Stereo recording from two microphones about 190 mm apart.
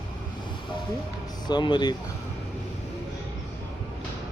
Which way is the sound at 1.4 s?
25° left (ahead or behind).